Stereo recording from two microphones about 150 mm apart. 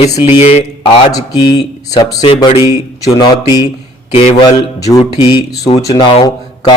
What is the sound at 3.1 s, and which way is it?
Speech, 30° left (ahead or behind).